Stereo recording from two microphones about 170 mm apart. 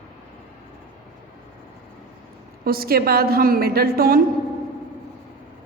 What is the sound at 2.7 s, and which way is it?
A woman's voice, 60° right (ahead or behind).